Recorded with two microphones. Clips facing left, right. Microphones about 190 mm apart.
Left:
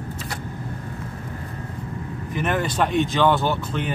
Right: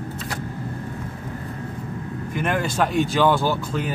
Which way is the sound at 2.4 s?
Centre (ahead or behind).